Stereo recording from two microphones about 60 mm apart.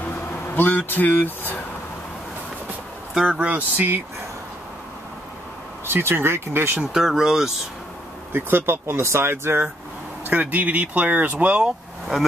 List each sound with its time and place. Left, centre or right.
0.0 s music: left
3.3 s speech: right
5.9 s speech: right
6.8 s speech: centre
8.3 s speech: right
10.2 s speech: right